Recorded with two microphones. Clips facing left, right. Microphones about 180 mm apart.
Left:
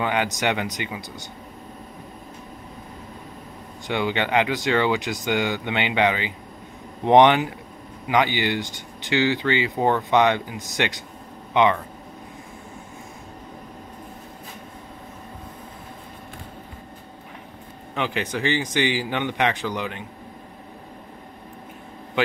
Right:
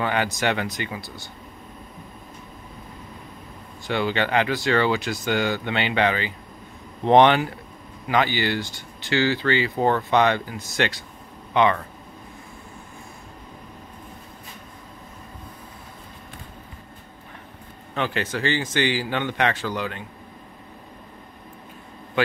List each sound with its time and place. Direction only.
0.0 s speech: 15° left (ahead or behind)
3.8 s speech: 15° left (ahead or behind)
17.9 s speech: 15° left (ahead or behind)